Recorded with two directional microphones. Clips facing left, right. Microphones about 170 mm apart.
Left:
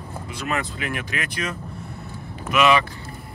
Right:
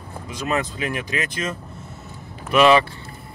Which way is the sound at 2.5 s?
35° right (ahead or behind).